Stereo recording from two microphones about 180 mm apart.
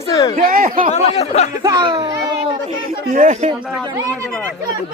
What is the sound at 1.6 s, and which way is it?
Speech, 20° right (ahead or behind).